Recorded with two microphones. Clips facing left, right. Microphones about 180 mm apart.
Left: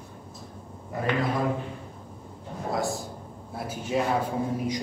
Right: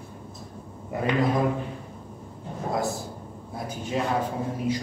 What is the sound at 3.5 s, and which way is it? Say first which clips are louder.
A man's voice: left 1 dB; 5° left (ahead or behind).